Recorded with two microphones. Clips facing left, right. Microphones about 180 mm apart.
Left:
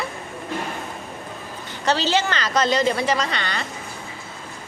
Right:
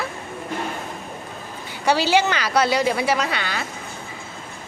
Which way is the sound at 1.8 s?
10° right (ahead or behind).